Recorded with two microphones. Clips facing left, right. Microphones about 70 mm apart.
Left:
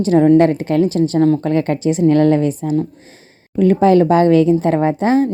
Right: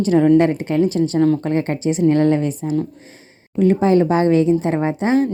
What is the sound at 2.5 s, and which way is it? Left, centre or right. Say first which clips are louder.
Speech: left 3 dB; left.